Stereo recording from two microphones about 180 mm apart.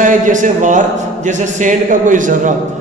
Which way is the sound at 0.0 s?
45° right (ahead or behind).